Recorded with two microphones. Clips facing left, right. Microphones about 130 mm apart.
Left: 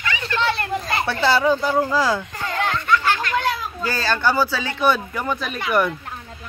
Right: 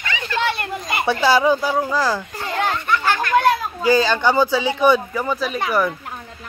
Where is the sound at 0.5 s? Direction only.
15° right (ahead or behind).